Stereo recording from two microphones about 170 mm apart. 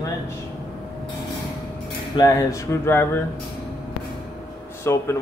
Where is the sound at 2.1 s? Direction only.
20° left (ahead or behind).